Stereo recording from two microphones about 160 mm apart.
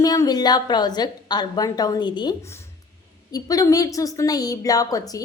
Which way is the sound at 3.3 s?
20° left (ahead or behind).